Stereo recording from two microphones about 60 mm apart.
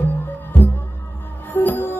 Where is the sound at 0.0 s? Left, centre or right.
Left.